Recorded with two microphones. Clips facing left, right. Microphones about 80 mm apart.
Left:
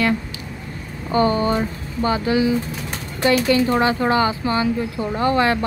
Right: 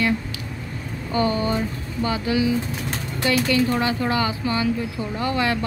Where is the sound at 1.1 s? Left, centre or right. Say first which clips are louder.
Left 4 dB; left.